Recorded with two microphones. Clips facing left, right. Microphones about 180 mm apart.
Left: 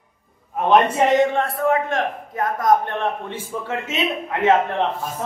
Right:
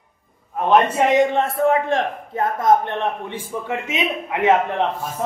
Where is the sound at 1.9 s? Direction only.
25° right (ahead or behind).